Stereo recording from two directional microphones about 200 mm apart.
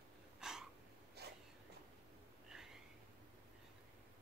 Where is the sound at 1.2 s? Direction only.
55° right (ahead or behind).